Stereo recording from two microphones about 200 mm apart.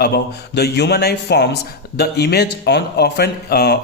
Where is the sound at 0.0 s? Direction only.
55° left (ahead or behind).